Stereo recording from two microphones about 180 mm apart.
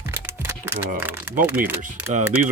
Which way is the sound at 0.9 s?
10° right (ahead or behind).